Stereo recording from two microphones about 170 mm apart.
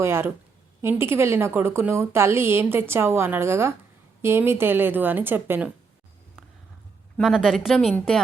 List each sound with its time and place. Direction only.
0.0 s a woman's voice: 15° right (ahead or behind)
7.2 s speech: centre (ahead or behind)